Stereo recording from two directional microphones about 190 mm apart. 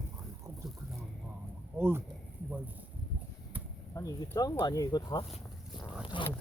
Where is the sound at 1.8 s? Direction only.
10° right (ahead or behind).